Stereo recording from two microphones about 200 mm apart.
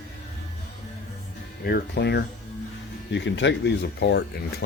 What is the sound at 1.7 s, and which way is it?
Speech, 55° left (ahead or behind).